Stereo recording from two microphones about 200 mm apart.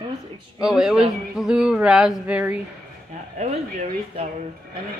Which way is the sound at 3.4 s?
35° right (ahead or behind).